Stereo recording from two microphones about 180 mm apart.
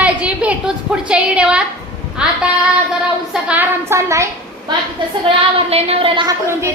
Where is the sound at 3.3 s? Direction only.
10° right (ahead or behind).